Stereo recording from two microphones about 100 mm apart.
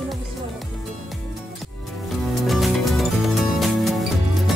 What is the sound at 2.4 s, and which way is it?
Music, centre (ahead or behind).